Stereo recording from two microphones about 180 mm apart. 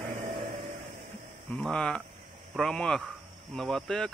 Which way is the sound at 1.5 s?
5° left (ahead or behind).